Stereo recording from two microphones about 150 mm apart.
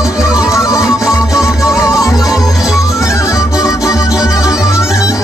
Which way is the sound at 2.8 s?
20° left (ahead or behind).